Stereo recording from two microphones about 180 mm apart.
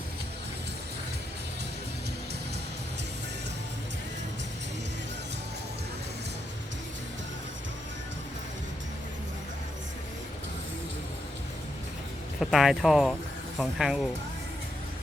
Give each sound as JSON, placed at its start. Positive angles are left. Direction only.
{"t": 12.4, "sound": "speech", "side_deg": 0}